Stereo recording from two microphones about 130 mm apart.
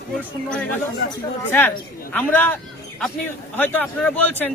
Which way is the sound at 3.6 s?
15° left (ahead or behind).